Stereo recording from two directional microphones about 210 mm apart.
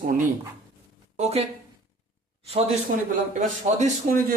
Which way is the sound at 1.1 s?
30° right (ahead or behind).